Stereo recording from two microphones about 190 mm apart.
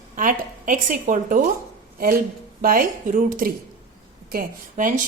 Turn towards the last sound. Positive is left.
turn(degrees=-45)  # may be behind; listen again after turning